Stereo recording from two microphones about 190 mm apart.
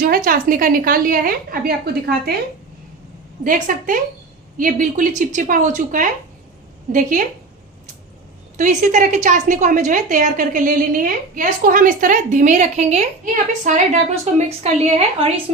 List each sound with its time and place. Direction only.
0.0 s a woman's voice: 50° right (ahead or behind)
3.4 s a woman's voice: 45° right (ahead or behind)
8.5 s a woman's voice: 40° right (ahead or behind)